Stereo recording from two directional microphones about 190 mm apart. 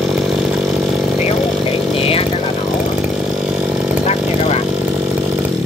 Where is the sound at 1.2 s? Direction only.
30° left (ahead or behind).